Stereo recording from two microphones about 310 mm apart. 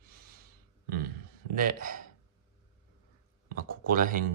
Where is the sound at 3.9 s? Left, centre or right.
Right.